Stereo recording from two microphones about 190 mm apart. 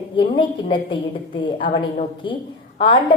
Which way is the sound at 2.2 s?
25° left (ahead or behind).